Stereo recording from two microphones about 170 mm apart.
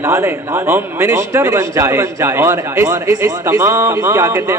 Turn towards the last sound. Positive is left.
turn(degrees=-20)  # may be behind; listen again after turning